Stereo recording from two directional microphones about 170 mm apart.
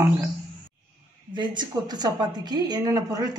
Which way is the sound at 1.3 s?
25° right (ahead or behind).